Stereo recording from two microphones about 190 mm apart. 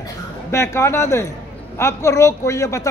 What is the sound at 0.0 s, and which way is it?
A man's voice, 15° left (ahead or behind).